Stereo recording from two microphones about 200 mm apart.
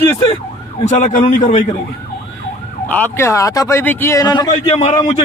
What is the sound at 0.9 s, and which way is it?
Speech, 40° left (ahead or behind).